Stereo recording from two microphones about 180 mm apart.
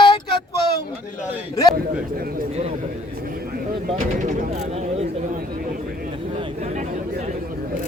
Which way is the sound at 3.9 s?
45° right (ahead or behind).